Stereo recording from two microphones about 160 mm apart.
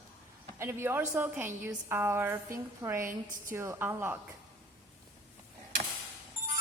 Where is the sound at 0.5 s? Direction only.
15° right (ahead or behind).